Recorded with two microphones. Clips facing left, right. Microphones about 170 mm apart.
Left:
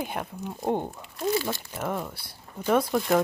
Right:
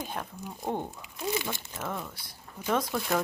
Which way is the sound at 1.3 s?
20° right (ahead or behind).